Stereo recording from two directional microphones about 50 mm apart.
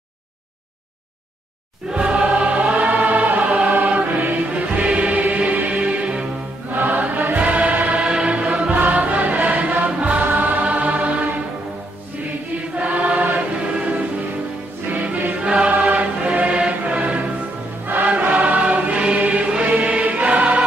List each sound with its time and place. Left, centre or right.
1.9 s choir: centre
3.7 s music: right
6.7 s choir: right
8.0 s music: centre
12.7 s choir: right
13.7 s music: right
15.4 s music: right
17.8 s choir: right